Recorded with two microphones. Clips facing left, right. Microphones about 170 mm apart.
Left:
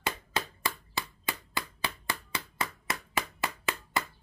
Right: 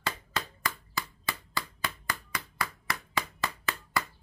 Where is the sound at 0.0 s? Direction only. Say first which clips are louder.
Left 1 dB; 25° left (ahead or behind).